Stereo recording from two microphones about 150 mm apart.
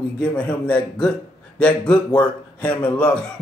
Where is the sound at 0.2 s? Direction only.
10° left (ahead or behind).